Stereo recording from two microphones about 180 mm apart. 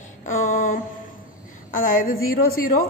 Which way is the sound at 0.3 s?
50° left (ahead or behind).